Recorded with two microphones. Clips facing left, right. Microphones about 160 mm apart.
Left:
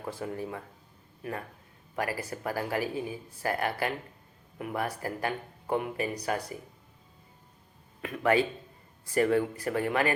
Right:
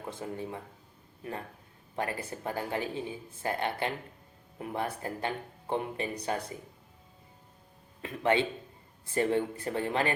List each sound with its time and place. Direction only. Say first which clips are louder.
0.1 s speech: left 2 dB; 25° right (ahead or behind)
8.0 s speech: left 2 dB; 25° right (ahead or behind)